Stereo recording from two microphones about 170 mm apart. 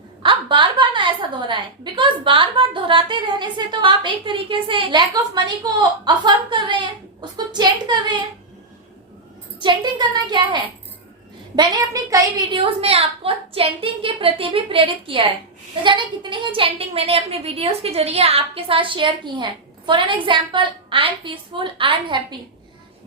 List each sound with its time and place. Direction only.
0.2 s a woman's voice: 30° right (ahead or behind)
9.6 s a woman's voice: 25° right (ahead or behind)
12.5 s a woman's voice: 35° right (ahead or behind)